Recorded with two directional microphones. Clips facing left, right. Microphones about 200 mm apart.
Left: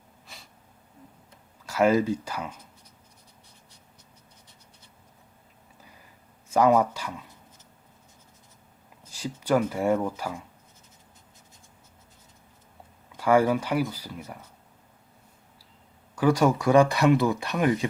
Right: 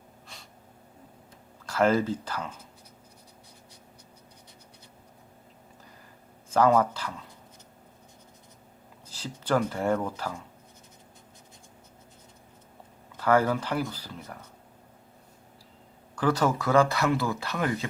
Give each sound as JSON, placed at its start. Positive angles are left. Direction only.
{"t": 0.3, "sound": "snort", "side_deg": 0}
{"t": 1.6, "sound": "speech", "side_deg": 10}
{"t": 6.5, "sound": "speech", "side_deg": 10}
{"t": 9.1, "sound": "speech", "side_deg": 10}
{"t": 13.1, "sound": "speech", "side_deg": 10}
{"t": 16.1, "sound": "speech", "side_deg": 10}